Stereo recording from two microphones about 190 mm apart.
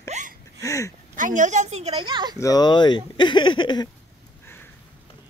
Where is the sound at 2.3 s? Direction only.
20° left (ahead or behind).